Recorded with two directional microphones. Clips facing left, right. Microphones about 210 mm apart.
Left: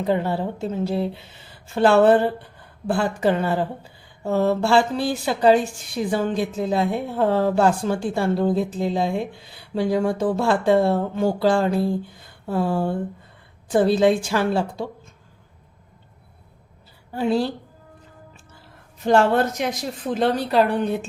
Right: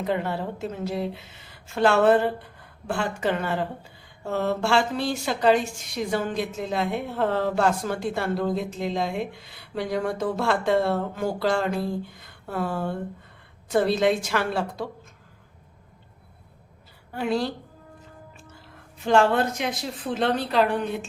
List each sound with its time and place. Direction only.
0.0 s speech: 30° left (ahead or behind)
17.2 s speech: 30° left (ahead or behind)
19.0 s speech: 40° left (ahead or behind)